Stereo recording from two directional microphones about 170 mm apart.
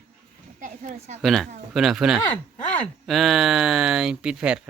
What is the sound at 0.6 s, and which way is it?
Speech, 50° right (ahead or behind).